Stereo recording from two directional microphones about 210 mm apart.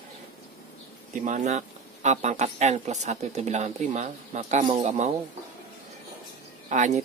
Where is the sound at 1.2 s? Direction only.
35° right (ahead or behind).